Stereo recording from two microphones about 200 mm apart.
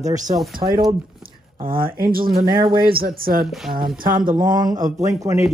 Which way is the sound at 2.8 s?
45° right (ahead or behind).